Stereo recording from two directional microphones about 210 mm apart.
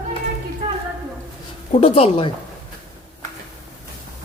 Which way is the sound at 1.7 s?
30° left (ahead or behind).